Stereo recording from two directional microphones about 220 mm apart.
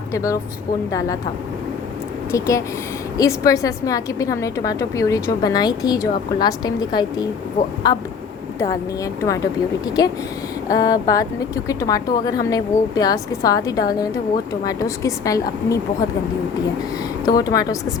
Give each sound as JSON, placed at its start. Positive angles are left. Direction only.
{"t": 0.1, "sound": "speech", "side_deg": 15}
{"t": 2.3, "sound": "a woman's voice", "side_deg": 15}
{"t": 17.2, "sound": "a woman's voice", "side_deg": 15}